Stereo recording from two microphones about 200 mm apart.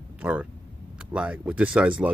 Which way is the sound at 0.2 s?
10° right (ahead or behind).